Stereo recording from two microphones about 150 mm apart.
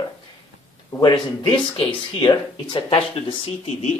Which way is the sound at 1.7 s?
40° left (ahead or behind).